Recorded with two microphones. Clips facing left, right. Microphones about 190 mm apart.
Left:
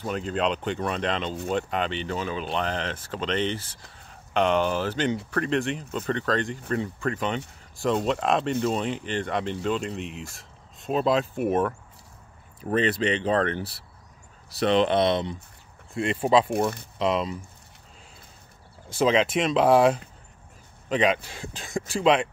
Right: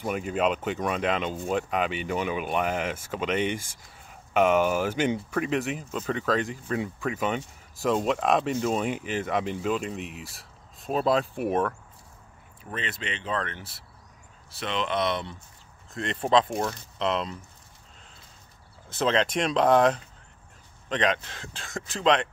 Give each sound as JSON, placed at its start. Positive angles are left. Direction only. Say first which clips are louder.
{"t": 0.0, "sound": "speech", "louder": "even", "side_deg": -10}
{"t": 12.6, "sound": "speech", "louder": "left 11 dB", "side_deg": 35}
{"t": 15.9, "sound": "speech", "louder": "left 2 dB", "side_deg": 10}
{"t": 18.9, "sound": "speech", "louder": "left 3 dB", "side_deg": 10}